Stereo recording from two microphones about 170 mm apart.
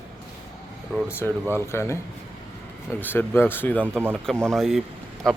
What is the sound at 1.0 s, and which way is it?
Speech, 15° left (ahead or behind).